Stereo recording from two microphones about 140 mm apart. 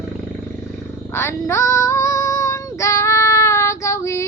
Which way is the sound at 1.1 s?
15° left (ahead or behind).